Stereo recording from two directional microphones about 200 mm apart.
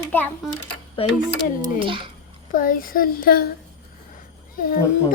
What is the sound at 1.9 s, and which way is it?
Speech, 25° right (ahead or behind).